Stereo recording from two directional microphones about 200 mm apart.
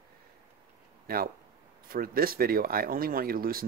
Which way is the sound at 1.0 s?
45° right (ahead or behind).